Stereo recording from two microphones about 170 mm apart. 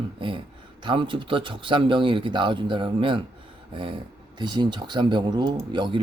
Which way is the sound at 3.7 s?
30° right (ahead or behind).